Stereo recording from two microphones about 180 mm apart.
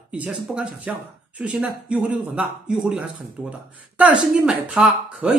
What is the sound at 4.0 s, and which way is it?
Speech, 5° right (ahead or behind).